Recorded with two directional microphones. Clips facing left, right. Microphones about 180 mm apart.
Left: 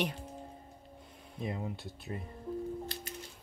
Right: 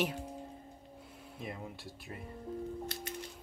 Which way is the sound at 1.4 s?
20° left (ahead or behind).